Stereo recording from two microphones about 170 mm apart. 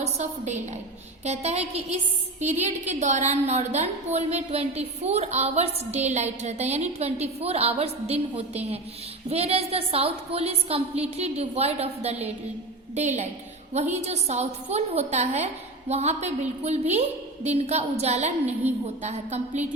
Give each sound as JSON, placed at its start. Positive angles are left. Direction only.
{"t": 0.0, "sound": "a woman's voice", "side_deg": -40}